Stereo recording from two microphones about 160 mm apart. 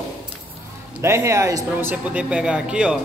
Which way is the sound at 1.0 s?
15° right (ahead or behind).